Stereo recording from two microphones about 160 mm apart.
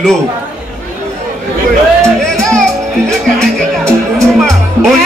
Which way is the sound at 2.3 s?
5° left (ahead or behind).